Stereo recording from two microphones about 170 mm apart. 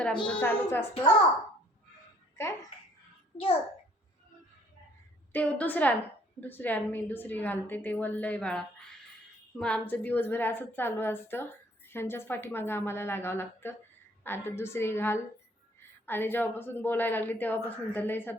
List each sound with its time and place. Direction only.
0.3 s a woman's voice: 10° left (ahead or behind)
2.4 s a woman's voice: 15° left (ahead or behind)
3.3 s a child's voice: 35° left (ahead or behind)
5.3 s a woman's voice: 10° left (ahead or behind)